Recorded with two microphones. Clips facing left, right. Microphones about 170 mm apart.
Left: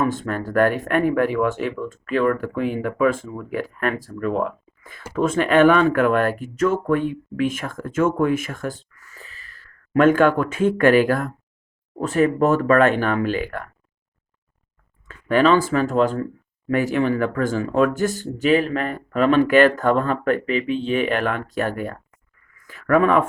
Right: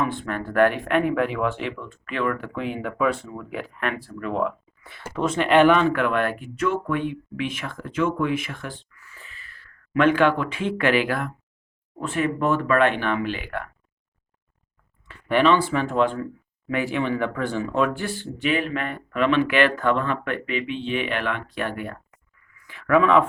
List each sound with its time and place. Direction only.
0.0 s speech: 45° left (ahead or behind)
15.4 s speech: 45° left (ahead or behind)
22.5 s a sound: 45° left (ahead or behind)